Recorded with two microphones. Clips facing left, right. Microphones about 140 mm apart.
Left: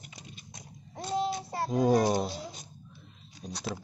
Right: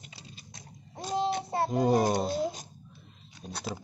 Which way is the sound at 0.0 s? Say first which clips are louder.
Left 1 dB; 30° right (ahead or behind).